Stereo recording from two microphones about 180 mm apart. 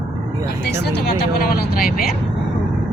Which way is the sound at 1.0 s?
55° left (ahead or behind).